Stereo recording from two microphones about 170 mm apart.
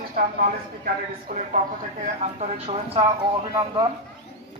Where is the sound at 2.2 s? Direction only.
40° right (ahead or behind).